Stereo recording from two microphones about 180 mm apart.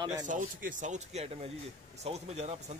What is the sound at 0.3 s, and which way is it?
Speech, 45° right (ahead or behind).